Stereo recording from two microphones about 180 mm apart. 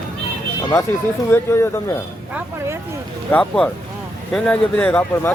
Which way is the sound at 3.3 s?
5° left (ahead or behind).